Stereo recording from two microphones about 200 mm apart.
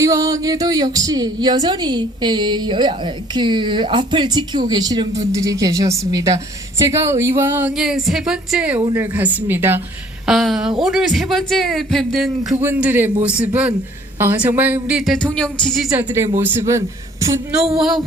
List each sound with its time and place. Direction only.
0.0 s a woman's voice: 15° right (ahead or behind); by 12.3 s centre (ahead or behind)
12.6 s a woman's voice: 10° right (ahead or behind)
17.7 s a man's voice: centre (ahead or behind)